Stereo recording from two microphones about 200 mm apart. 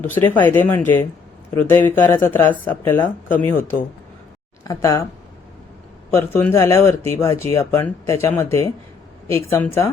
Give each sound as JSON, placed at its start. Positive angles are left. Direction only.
{"t": 0.0, "sound": "speech", "side_deg": 10}
{"t": 6.1, "sound": "speech", "side_deg": 10}